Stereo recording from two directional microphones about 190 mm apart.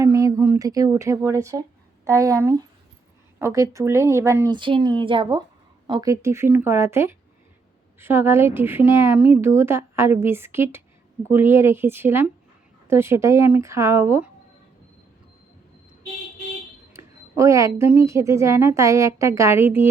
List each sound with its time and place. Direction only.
0.0 s a woman's voice: 15° right (ahead or behind)
16.9 s a woman's voice: 15° right (ahead or behind)